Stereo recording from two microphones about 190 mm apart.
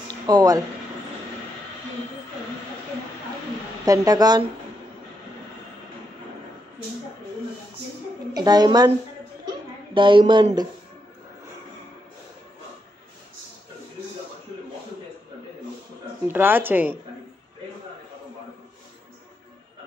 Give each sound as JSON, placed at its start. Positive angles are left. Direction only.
{"t": 0.1, "sound": "a sound", "side_deg": -20}
{"t": 3.8, "sound": "speech", "side_deg": -20}
{"t": 8.3, "sound": "speech", "side_deg": -20}
{"t": 16.3, "sound": "speech", "side_deg": -10}